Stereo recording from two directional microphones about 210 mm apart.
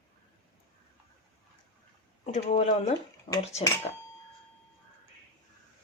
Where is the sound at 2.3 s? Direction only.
35° left (ahead or behind).